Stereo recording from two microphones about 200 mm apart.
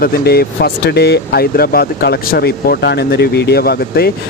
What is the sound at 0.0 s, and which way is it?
Speech, 50° left (ahead or behind).